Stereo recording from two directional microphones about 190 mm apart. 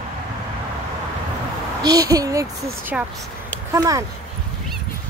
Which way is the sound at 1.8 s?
20° right (ahead or behind).